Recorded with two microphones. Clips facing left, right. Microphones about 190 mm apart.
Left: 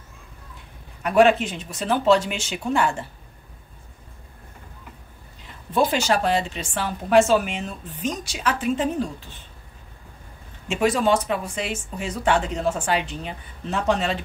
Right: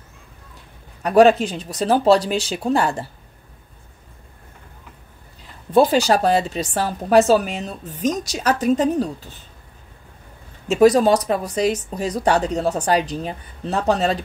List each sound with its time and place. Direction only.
1.0 s speech: 35° right (ahead or behind)
5.7 s speech: 35° right (ahead or behind)
10.7 s speech: 40° right (ahead or behind)